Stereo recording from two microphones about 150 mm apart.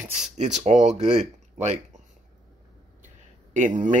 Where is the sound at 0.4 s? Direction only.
50° right (ahead or behind).